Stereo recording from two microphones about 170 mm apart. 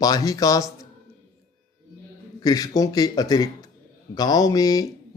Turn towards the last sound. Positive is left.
turn(degrees=20)  # may be behind; listen again after turning